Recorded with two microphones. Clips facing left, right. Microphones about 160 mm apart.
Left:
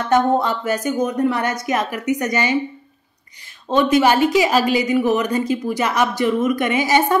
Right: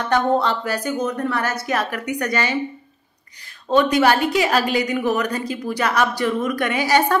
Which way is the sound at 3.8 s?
15° left (ahead or behind).